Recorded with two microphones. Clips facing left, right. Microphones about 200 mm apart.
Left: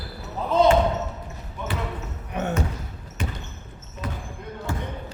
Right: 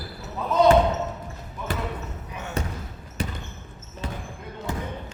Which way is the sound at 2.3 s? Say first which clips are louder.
Left 11 dB; 60° left (ahead or behind).